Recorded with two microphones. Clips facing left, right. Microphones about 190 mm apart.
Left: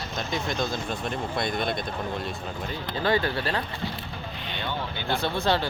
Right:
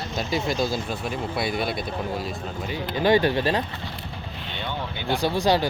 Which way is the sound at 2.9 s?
15° right (ahead or behind).